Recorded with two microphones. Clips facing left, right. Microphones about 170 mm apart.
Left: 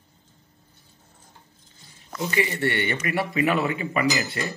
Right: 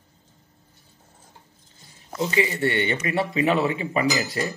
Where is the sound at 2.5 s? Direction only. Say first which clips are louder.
Right 2 dB; 20° right (ahead or behind).